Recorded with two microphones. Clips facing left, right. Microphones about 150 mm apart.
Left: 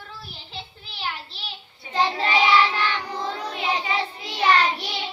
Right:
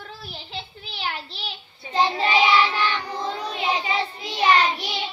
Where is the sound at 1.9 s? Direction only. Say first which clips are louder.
Right 1 dB; 20° right (ahead or behind).